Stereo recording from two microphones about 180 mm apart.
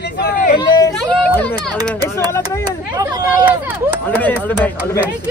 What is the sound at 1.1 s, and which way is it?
Speech, 10° left (ahead or behind).